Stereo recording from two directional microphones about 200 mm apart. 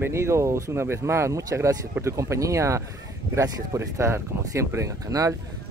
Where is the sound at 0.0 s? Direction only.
15° right (ahead or behind).